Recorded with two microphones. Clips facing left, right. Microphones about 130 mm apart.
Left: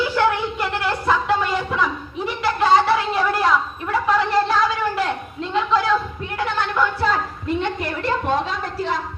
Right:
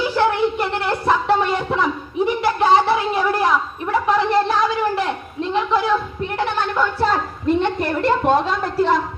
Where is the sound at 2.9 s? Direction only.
20° right (ahead or behind).